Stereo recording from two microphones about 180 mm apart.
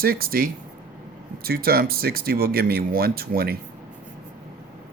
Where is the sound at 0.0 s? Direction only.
55° right (ahead or behind).